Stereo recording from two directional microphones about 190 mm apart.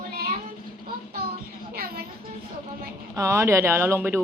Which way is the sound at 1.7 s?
55° right (ahead or behind).